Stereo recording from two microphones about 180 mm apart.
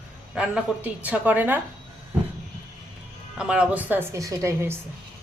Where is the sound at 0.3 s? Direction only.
5° right (ahead or behind).